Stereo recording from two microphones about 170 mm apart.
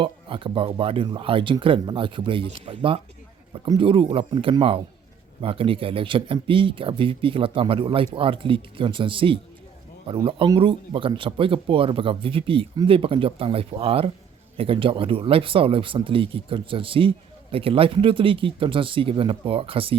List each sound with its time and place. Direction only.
0.0 s speech: 30° right (ahead or behind)